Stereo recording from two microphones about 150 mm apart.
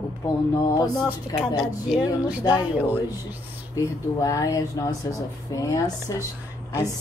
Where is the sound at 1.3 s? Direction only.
25° left (ahead or behind).